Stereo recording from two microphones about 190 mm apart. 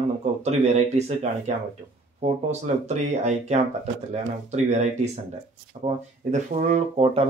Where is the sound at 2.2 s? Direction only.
35° right (ahead or behind).